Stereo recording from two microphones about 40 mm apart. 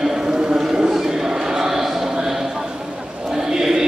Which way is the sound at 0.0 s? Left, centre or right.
Centre.